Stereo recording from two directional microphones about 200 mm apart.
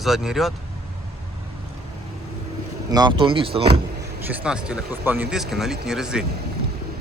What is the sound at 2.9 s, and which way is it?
Speech, 20° right (ahead or behind).